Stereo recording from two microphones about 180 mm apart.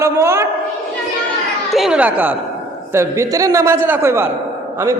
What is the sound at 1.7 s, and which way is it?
A man's voice, 5° right (ahead or behind).